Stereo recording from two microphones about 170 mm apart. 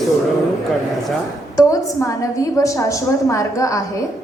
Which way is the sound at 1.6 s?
20° left (ahead or behind).